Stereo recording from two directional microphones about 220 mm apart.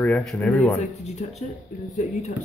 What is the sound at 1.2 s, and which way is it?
Speech, 35° left (ahead or behind).